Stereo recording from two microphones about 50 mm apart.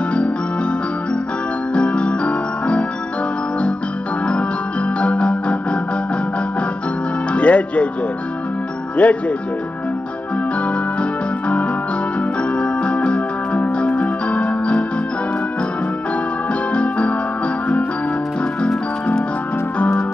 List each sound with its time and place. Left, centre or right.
0.1 s music: left
1.7 s keyboard: left
4.3 s music: left
7.3 s speech: left
9.0 s speech: left
10.7 s music: left
16.7 s music: left